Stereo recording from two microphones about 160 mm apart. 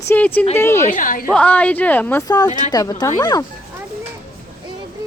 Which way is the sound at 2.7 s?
25° left (ahead or behind).